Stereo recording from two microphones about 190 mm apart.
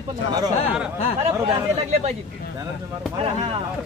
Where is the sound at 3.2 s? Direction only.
30° right (ahead or behind).